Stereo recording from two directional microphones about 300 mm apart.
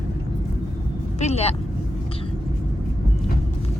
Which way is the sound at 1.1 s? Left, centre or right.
Left.